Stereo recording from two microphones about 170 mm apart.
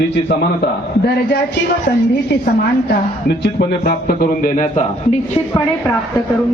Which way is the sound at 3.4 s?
65° left (ahead or behind).